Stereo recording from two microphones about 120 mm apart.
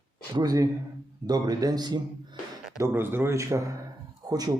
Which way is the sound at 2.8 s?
20° right (ahead or behind).